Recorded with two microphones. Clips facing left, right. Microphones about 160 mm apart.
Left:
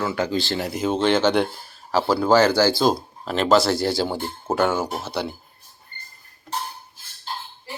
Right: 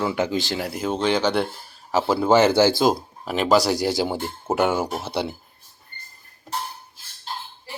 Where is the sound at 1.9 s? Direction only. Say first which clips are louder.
Even; 20° right (ahead or behind).